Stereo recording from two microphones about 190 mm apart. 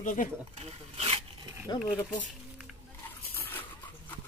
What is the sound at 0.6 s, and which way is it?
Speech, 35° right (ahead or behind).